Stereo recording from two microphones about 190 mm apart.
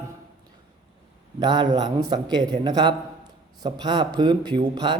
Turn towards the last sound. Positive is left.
turn(degrees=-25)  # may be behind; listen again after turning